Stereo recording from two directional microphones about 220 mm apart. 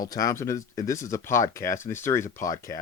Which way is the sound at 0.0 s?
15° left (ahead or behind).